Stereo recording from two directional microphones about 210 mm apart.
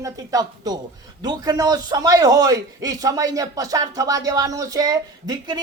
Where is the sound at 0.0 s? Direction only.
15° right (ahead or behind).